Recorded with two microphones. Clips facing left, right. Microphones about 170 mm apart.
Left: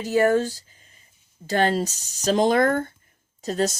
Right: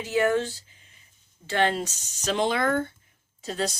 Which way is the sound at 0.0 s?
40° left (ahead or behind).